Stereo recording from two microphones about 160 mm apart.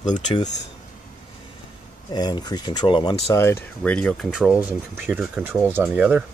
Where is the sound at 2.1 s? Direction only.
25° left (ahead or behind); by 5.4 s centre (ahead or behind).